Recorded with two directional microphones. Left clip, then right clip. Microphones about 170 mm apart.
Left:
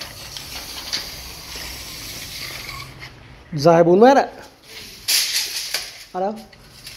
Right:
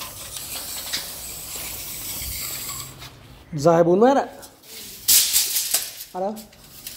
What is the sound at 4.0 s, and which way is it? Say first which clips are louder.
Speech: left 5 dB; 15° left (ahead or behind).